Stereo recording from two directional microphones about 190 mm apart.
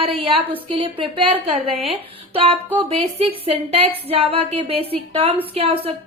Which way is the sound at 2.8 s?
30° right (ahead or behind).